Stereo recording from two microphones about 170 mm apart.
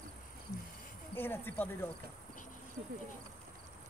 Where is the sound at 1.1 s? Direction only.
10° left (ahead or behind).